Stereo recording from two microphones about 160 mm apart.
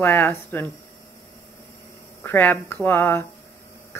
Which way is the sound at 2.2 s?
15° left (ahead or behind).